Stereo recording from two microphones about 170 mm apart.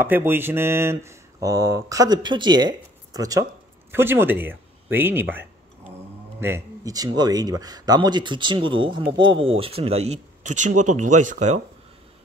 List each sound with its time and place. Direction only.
0.0 s speech: 15° right (ahead or behind); by 11.6 s 45° right (ahead or behind)